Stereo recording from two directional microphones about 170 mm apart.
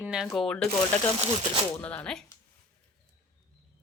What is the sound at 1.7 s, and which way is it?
Speech, 10° left (ahead or behind).